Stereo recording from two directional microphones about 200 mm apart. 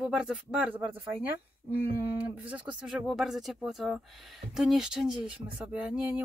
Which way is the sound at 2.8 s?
Centre (ahead or behind).